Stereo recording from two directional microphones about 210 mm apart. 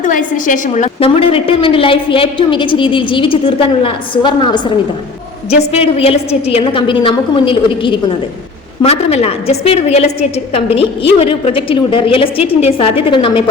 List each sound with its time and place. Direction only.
0.0 s a woman's voice: 40° left (ahead or behind); by 4.7 s 20° left (ahead or behind)
5.7 s a woman's voice: 30° left (ahead or behind)